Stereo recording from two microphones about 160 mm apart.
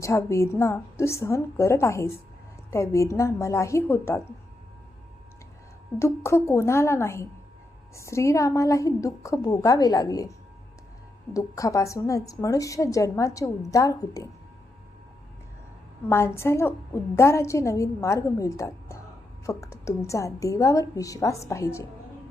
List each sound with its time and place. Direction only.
0.0 s a woman's voice: 20° left (ahead or behind)
6.0 s a woman's voice: 15° left (ahead or behind)
11.3 s a woman's voice: 20° left (ahead or behind)
16.0 s a woman's voice: 15° left (ahead or behind)